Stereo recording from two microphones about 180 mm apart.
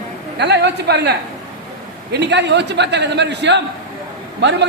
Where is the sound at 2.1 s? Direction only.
75° right (ahead or behind).